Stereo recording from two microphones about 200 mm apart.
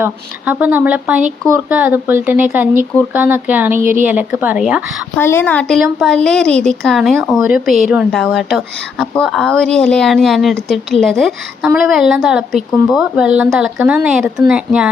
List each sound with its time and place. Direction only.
0.0 s speech: 10° right (ahead or behind)
5.2 s a woman's voice: 10° left (ahead or behind)